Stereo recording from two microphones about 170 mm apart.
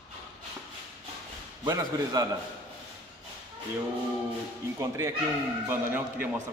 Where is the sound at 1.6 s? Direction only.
25° right (ahead or behind).